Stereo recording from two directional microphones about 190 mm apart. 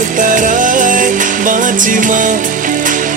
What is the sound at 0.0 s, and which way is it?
Music, 45° right (ahead or behind).